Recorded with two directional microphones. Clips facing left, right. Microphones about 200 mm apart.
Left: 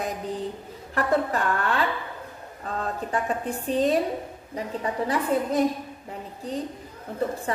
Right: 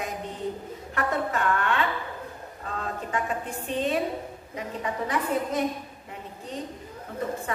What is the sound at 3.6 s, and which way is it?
A woman's voice, 40° left (ahead or behind).